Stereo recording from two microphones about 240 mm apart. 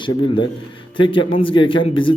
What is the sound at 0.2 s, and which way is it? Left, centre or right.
A man's voice, centre.